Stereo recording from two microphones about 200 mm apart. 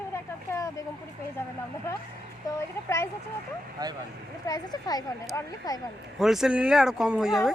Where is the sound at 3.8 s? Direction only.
20° right (ahead or behind).